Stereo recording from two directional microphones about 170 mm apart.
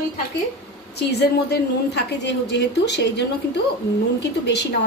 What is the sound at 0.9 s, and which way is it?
A woman's voice, 75° left (ahead or behind).